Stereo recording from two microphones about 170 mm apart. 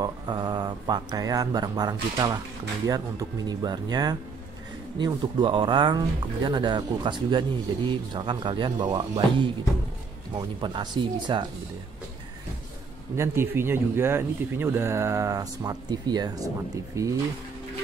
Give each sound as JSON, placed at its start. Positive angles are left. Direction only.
{"t": 0.0, "sound": "speech", "side_deg": -25}
{"t": 13.1, "sound": "speech", "side_deg": -15}